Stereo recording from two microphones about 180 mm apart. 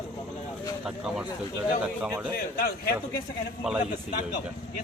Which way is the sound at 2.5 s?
55° left (ahead or behind).